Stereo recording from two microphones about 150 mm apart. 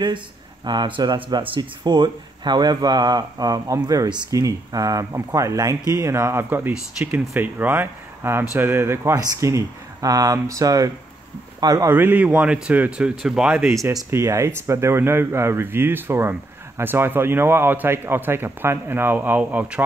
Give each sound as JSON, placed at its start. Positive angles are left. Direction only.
{"t": 0.7, "sound": "speech", "side_deg": -30}
{"t": 13.8, "sound": "speech", "side_deg": -20}